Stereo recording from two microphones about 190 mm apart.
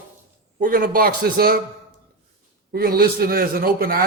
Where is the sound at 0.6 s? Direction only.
50° right (ahead or behind).